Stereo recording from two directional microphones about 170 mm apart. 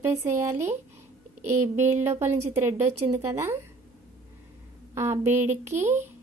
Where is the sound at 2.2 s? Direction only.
15° right (ahead or behind).